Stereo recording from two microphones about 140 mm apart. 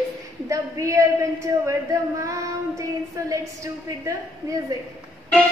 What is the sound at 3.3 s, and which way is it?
A woman's voice, 25° right (ahead or behind).